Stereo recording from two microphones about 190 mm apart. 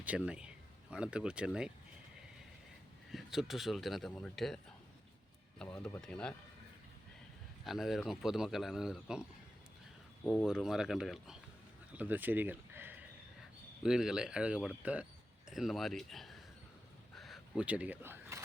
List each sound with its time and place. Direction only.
0.0 s speech: 5° right (ahead or behind)
3.1 s speech: centre (ahead or behind)
5.7 s speech: 5° left (ahead or behind)
7.6 s speech: centre (ahead or behind)
10.4 s speech: 5° right (ahead or behind)
17.2 s a sound: centre (ahead or behind)